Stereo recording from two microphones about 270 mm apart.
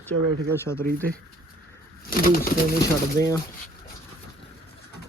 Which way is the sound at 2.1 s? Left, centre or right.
Left.